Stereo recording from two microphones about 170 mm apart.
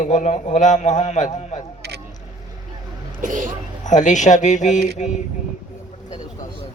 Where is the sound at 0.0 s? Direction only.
45° left (ahead or behind).